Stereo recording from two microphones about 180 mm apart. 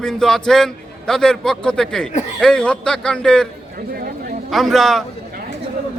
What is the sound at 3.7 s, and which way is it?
Chatter, 50° right (ahead or behind).